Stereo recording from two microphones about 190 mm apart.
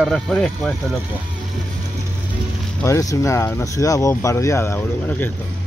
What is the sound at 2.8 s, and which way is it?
Speech, 15° left (ahead or behind).